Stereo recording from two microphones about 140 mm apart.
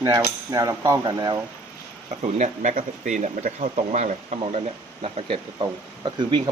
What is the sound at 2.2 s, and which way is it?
Speech, 55° right (ahead or behind).